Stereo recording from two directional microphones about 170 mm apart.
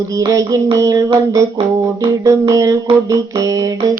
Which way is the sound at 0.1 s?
20° right (ahead or behind).